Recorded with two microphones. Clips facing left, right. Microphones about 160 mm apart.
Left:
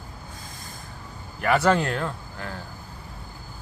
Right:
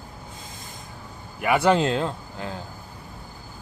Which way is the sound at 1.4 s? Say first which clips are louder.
Right 1 dB; 10° right (ahead or behind).